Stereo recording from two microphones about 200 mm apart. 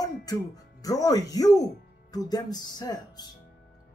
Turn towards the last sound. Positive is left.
turn(degrees=20)  # may be behind; listen again after turning